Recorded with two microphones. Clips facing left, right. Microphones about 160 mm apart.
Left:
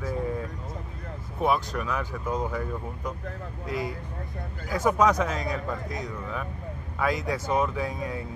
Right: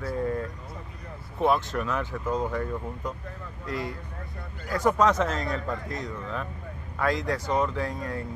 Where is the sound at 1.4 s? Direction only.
Centre (ahead or behind).